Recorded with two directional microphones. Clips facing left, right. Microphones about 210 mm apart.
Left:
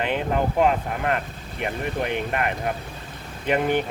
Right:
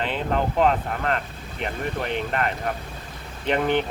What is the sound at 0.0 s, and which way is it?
Speech, 10° left (ahead or behind).